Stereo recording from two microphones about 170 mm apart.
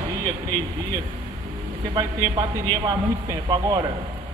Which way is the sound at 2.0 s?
20° right (ahead or behind).